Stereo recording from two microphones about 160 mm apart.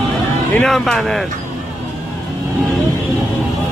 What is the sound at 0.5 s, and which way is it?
Speech, centre (ahead or behind).